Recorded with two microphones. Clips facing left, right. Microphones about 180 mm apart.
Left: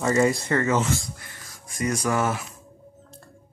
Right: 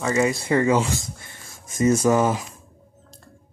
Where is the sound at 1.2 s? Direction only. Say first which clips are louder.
Right 1 dB; 25° right (ahead or behind).